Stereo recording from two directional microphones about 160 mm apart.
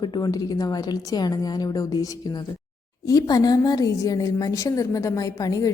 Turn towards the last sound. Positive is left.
turn(degrees=20)  # may be behind; listen again after turning